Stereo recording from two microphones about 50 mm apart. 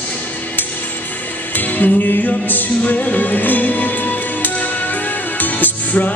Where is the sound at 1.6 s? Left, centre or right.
Left.